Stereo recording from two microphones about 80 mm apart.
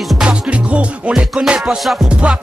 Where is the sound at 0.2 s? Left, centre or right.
Centre.